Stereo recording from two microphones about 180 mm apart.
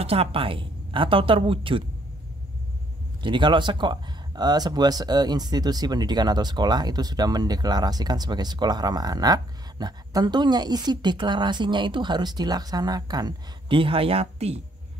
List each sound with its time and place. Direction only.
0.0 s speech: 35° right (ahead or behind)
3.2 s speech: 25° right (ahead or behind)